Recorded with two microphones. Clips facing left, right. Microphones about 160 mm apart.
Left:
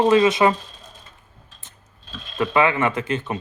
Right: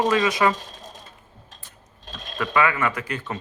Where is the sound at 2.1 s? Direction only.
45° right (ahead or behind).